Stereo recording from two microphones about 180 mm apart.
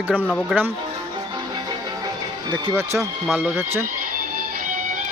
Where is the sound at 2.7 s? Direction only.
15° right (ahead or behind).